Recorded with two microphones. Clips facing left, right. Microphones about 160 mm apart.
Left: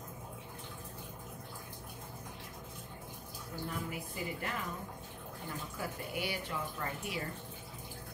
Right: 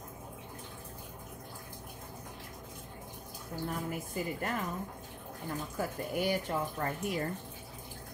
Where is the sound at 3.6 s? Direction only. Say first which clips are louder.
Right 4 dB; 45° right (ahead or behind).